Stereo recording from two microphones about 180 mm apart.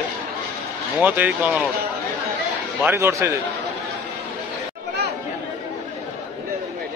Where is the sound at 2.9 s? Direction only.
15° right (ahead or behind).